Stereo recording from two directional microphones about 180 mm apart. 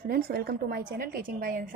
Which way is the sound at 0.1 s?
60° right (ahead or behind).